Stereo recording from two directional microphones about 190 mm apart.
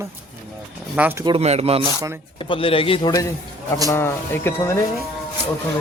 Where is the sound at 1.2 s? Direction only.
30° right (ahead or behind).